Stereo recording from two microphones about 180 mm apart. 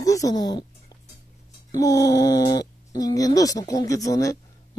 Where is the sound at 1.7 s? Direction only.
20° left (ahead or behind).